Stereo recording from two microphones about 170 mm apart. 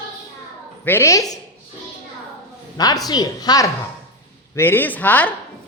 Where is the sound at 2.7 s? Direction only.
20° left (ahead or behind).